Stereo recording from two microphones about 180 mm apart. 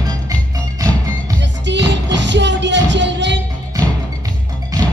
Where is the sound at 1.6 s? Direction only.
80° right.